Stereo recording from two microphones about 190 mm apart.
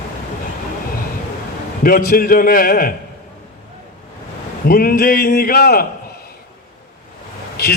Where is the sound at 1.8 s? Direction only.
50° left (ahead or behind).